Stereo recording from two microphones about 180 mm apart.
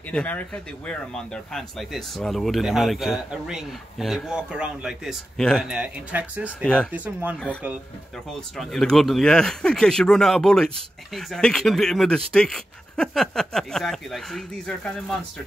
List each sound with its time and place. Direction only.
0.1 s speech: 5° left (ahead or behind); by 6.5 s 10° right (ahead or behind)
6.6 s speech: 5° left (ahead or behind)
6.9 s speech: 10° right (ahead or behind)
8.3 s speech: centre (ahead or behind)